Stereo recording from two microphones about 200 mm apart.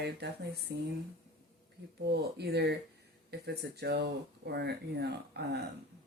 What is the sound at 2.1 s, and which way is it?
Speech, 55° right (ahead or behind).